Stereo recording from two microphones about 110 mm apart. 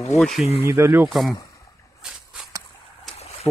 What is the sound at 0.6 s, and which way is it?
Speech, 25° right (ahead or behind).